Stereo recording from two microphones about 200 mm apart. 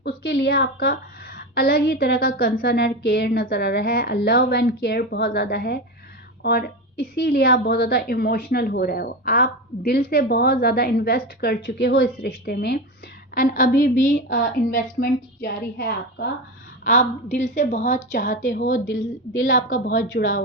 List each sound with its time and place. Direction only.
0.0 s a woman's voice: 55° left (ahead or behind)
12.3 s a woman's voice: 50° left (ahead or behind)
14.3 s a woman's voice: 55° left (ahead or behind)
16.8 s a woman's voice: 35° left (ahead or behind)
19.9 s a woman's voice: 70° left (ahead or behind)